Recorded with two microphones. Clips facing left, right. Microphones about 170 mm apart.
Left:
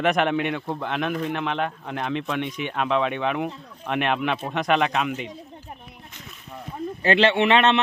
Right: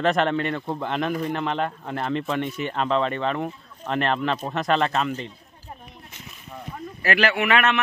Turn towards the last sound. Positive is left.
turn(degrees=25)  # may be behind; listen again after turning